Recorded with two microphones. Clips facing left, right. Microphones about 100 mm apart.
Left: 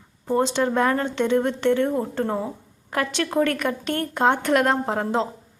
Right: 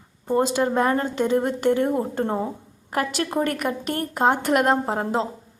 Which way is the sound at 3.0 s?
5° right (ahead or behind).